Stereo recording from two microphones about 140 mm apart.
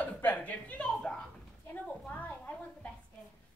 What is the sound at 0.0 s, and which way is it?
A woman's voice, 10° left (ahead or behind).